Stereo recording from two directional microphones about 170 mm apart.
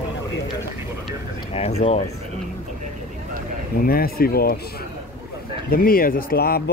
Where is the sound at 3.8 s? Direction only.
60° left (ahead or behind).